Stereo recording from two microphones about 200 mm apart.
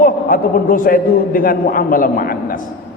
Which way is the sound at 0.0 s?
45° left (ahead or behind).